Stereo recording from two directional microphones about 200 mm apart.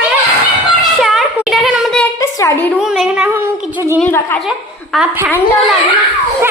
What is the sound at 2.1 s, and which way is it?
Speech, 15° left (ahead or behind).